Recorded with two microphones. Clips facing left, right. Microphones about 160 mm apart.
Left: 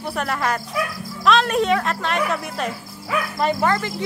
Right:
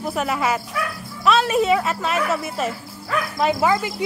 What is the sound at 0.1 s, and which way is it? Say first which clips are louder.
Speech: right 1 dB; 5° right (ahead or behind).